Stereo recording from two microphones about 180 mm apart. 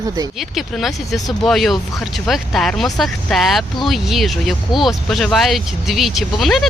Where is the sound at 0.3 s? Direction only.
Centre (ahead or behind).